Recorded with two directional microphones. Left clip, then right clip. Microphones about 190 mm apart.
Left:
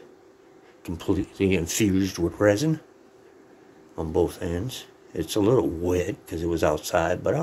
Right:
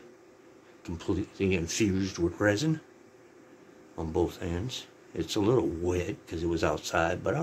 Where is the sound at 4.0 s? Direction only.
25° left (ahead or behind).